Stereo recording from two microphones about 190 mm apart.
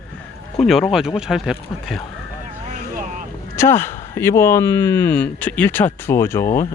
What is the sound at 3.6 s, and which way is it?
Speech, 10° left (ahead or behind).